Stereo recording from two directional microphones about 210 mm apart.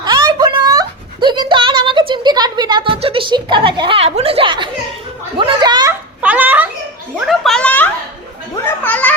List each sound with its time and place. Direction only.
0.0 s a sound: 20° right (ahead or behind)
5.4 s children playing: 20° right (ahead or behind)
6.2 s babbling: 10° right (ahead or behind)
7.3 s gargling: centre (ahead or behind)
8.6 s music: 5° left (ahead or behind)